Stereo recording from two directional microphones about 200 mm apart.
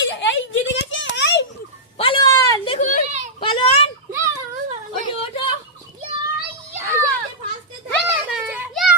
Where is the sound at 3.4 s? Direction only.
25° left (ahead or behind).